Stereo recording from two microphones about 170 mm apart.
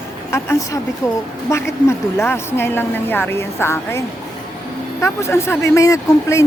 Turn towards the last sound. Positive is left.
turn(degrees=15)  # may be behind; listen again after turning